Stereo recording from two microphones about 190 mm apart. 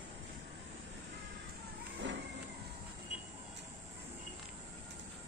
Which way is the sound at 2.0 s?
70° right (ahead or behind).